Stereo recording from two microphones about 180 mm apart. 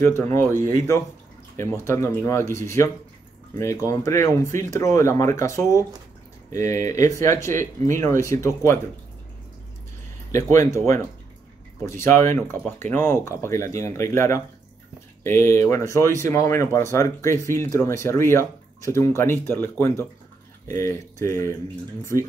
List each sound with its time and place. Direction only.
0.0 s speech: 15° left (ahead or behind)
10.3 s speech: 15° left (ahead or behind)
11.8 s speech: 15° left (ahead or behind)